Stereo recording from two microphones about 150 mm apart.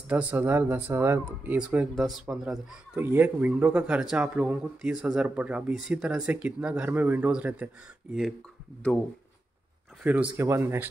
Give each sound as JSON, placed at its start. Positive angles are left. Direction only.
{"t": 0.1, "sound": "speech", "side_deg": -10}
{"t": 10.0, "sound": "speech", "side_deg": -10}